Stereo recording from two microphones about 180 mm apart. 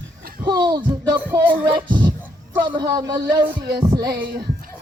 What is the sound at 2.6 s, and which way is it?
Speech, 25° right (ahead or behind).